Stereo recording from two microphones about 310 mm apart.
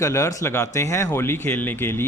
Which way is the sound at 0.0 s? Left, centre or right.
Centre.